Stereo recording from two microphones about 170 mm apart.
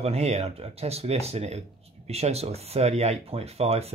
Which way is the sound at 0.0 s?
40° right (ahead or behind).